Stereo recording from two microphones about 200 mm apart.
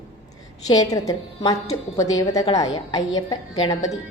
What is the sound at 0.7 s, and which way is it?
A woman's voice, 20° left (ahead or behind).